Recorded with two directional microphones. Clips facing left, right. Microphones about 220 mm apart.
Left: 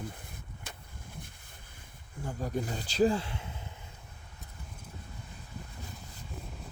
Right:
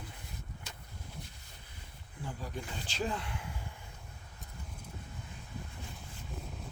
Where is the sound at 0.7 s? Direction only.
55° left (ahead or behind).